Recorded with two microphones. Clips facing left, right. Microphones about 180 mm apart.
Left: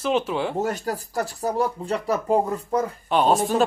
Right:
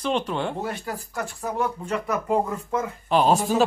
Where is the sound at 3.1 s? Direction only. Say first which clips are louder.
Even; centre (ahead or behind).